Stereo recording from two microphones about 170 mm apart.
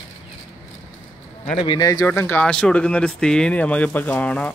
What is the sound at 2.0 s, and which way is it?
Speech, 10° left (ahead or behind).